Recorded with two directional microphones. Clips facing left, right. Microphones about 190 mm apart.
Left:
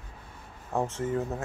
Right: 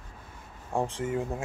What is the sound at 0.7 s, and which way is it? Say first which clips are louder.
Speech: even; 15° right (ahead or behind).